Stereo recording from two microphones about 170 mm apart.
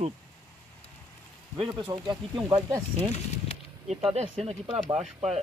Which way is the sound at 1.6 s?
30° right (ahead or behind).